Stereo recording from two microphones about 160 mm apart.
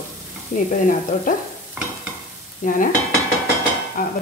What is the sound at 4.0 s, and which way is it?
Speech, 60° left (ahead or behind).